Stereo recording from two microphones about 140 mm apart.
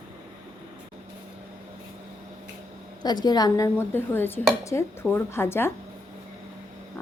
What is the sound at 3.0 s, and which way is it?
A woman's voice, 30° left (ahead or behind).